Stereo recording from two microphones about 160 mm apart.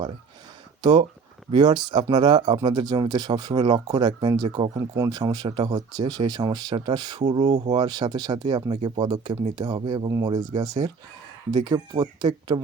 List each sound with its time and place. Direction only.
0.8 s speech: 25° right (ahead or behind)
4.4 s speech: 35° right (ahead or behind)
4.8 s speech: 25° right (ahead or behind)
7.3 s speech: 40° right (ahead or behind)